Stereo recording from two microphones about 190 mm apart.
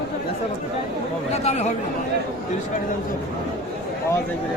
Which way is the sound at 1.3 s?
35° left (ahead or behind).